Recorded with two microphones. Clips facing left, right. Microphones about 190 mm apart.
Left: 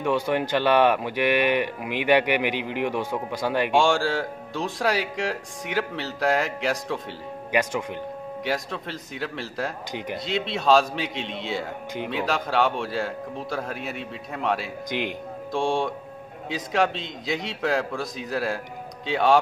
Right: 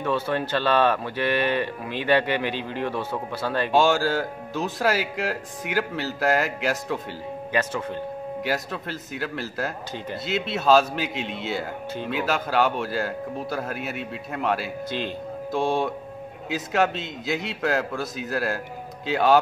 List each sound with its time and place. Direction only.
0.0 s speech: 15° left (ahead or behind)
3.7 s speech: 5° right (ahead or behind)
7.5 s speech: 15° left (ahead or behind)
8.5 s speech: 5° right (ahead or behind)
14.9 s speech: 15° left (ahead or behind)
15.5 s speech: 5° right (ahead or behind)